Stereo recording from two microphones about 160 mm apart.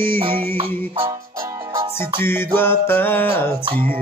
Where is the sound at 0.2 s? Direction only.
35° right (ahead or behind).